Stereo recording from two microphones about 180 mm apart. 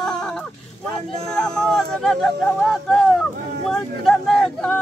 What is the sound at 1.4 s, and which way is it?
Speech, 5° left (ahead or behind).